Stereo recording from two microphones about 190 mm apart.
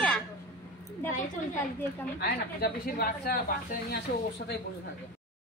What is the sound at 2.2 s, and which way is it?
Speech, 55° left (ahead or behind).